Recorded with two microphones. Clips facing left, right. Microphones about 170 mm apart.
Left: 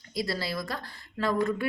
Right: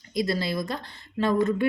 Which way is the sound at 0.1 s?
20° right (ahead or behind).